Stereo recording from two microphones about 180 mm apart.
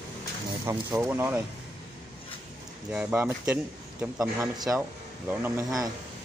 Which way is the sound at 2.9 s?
10° right (ahead or behind).